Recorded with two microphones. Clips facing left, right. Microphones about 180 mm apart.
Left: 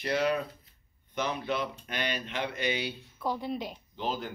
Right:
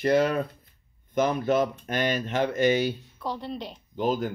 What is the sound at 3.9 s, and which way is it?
Speech, 50° right (ahead or behind).